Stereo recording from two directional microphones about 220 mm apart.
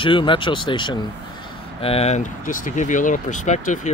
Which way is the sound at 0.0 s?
20° left (ahead or behind).